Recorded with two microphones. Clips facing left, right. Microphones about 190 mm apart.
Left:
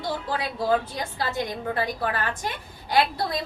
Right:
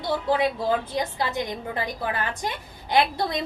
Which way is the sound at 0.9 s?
20° right (ahead or behind).